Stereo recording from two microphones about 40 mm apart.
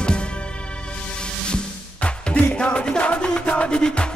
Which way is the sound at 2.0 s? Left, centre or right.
Left.